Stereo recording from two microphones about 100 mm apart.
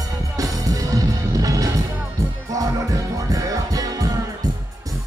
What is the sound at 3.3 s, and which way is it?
Music, 35° right (ahead or behind).